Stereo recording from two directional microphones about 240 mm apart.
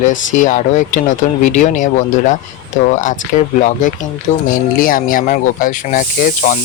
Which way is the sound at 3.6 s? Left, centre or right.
Left.